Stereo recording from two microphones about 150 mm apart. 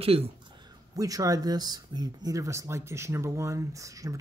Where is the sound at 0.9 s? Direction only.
25° right (ahead or behind).